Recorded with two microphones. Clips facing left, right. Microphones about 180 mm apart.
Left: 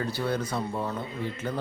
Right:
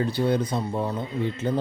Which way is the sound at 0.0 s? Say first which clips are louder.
Right 6 dB; 20° right (ahead or behind).